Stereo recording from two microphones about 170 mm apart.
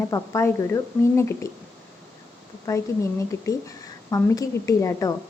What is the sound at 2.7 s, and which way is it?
A woman's voice, 15° left (ahead or behind).